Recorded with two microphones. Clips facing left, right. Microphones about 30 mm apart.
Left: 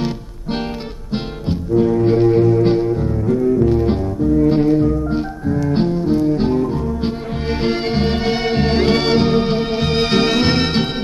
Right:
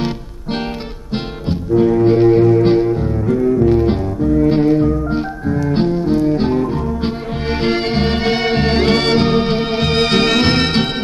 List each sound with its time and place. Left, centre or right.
1.1 s music: centre